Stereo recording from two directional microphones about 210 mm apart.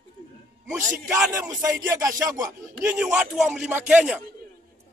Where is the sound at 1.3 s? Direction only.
15° right (ahead or behind).